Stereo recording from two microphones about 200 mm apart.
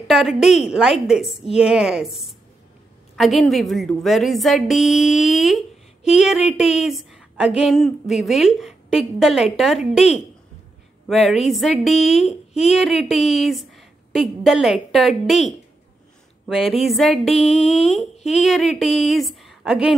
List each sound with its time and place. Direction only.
0.0 s a woman's voice: centre (ahead or behind)
3.2 s a woman's voice: centre (ahead or behind)
11.1 s a woman's voice: centre (ahead or behind)
16.7 s a woman's voice: centre (ahead or behind)
17.4 s a sound: 30° left (ahead or behind)
18.4 s a woman's voice: centre (ahead or behind)